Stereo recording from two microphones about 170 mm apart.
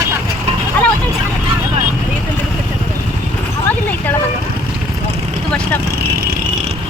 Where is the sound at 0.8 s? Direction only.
10° left (ahead or behind).